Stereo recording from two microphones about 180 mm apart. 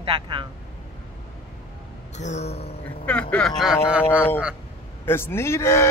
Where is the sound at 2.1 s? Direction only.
40° left (ahead or behind).